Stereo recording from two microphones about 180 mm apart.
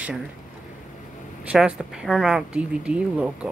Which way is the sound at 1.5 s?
5° right (ahead or behind).